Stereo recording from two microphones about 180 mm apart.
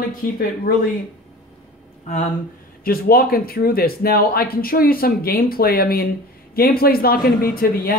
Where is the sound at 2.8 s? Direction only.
55° left (ahead or behind).